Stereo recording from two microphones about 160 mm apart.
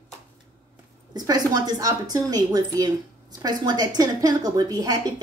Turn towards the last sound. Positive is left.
turn(degrees=-25)  # may be behind; listen again after turning